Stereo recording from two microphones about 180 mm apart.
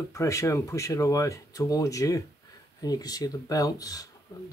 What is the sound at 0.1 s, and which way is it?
Speech, 15° left (ahead or behind).